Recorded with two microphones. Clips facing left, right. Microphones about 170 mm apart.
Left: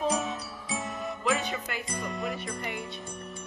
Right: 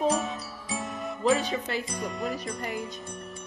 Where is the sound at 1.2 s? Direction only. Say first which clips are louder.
Right 6 dB; 35° right (ahead or behind).